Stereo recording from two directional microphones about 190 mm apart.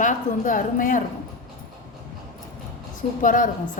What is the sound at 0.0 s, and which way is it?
A woman's voice, 45° left (ahead or behind).